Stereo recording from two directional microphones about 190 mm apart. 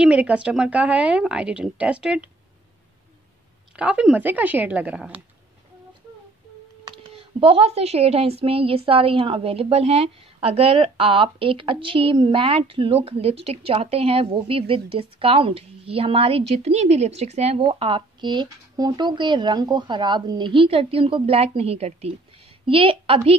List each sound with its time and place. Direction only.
0.0 s a woman's voice: 5° right (ahead or behind)
3.7 s a woman's voice: 5° right (ahead or behind)
6.9 s a woman's voice: 30° right (ahead or behind)